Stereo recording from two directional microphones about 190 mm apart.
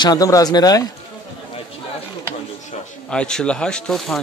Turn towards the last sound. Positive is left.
turn(degrees=5)  # may be behind; listen again after turning